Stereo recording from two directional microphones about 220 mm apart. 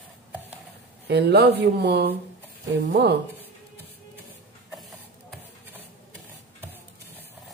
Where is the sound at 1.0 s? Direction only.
50° right (ahead or behind).